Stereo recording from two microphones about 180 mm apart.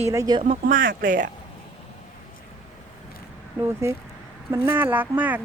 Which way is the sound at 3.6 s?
15° right (ahead or behind).